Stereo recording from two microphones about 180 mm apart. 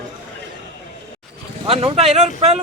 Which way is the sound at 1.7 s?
30° right (ahead or behind).